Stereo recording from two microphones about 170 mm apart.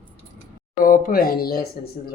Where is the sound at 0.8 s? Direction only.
55° left (ahead or behind).